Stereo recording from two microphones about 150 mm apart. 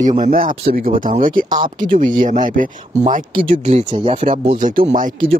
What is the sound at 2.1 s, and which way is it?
Speech, 60° right (ahead or behind).